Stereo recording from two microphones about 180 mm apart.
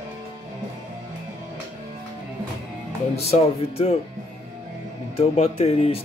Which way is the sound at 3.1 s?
35° left (ahead or behind).